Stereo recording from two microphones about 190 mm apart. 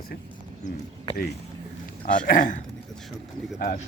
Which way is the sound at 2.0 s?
50° left (ahead or behind).